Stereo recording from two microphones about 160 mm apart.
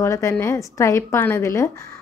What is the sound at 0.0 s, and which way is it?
Speech, 15° left (ahead or behind).